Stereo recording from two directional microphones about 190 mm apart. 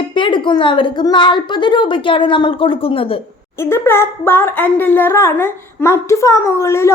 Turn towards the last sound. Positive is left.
turn(degrees=15)  # may be behind; listen again after turning